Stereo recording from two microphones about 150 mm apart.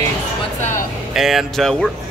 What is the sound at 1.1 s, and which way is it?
Speech, centre (ahead or behind).